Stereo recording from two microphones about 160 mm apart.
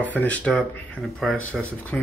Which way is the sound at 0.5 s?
Centre (ahead or behind).